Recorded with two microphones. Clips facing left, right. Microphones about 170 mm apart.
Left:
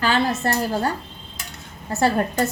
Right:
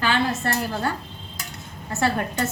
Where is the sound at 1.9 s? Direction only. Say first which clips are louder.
Left 4 dB; 40° left (ahead or behind).